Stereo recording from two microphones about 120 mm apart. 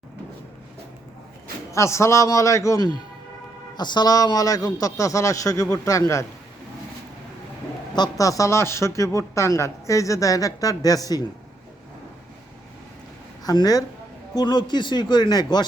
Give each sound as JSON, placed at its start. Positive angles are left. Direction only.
{"t": 1.7, "sound": "speech", "side_deg": 25}
{"t": 7.9, "sound": "speech", "side_deg": 30}
{"t": 13.4, "sound": "a woman's voice", "side_deg": 35}